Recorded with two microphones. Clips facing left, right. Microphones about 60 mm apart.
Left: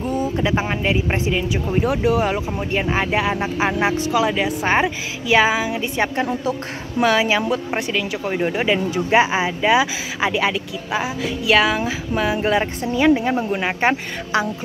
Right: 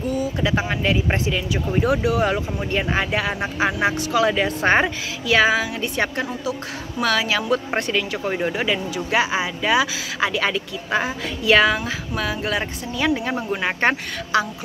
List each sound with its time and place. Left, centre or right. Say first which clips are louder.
0.4 s speech: left 1 dB; left
4.3 s speech: right 1 dB; centre
5.3 s speech: left 1 dB; centre
7.5 s speech: right 1 dB; centre
8.5 s speech: left 4 dB; centre
10.5 s speech: right 1 dB; centre
12.2 s speech: left 6 dB; left
13.5 s speech: left 1 dB; centre
14.3 s speech: even; left